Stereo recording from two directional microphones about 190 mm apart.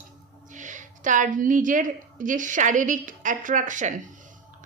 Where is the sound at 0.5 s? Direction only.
40° right (ahead or behind).